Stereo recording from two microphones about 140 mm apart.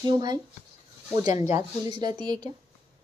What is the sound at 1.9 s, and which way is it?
Speech, 30° right (ahead or behind).